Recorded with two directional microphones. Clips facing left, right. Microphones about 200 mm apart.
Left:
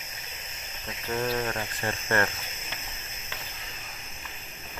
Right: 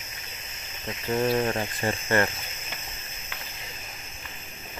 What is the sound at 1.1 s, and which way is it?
Speech, 15° right (ahead or behind).